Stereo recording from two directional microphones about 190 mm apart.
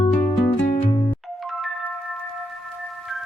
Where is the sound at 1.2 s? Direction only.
Centre (ahead or behind).